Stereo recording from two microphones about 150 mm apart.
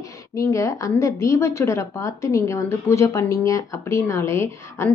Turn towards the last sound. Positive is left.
turn(degrees=20)  # may be behind; listen again after turning